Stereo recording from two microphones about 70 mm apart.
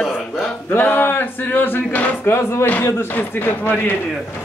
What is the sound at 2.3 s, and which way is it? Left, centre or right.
Speech, left.